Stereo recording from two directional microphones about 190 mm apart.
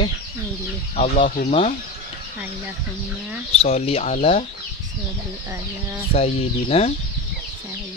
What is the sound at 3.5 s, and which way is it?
Speech, 35° left (ahead or behind).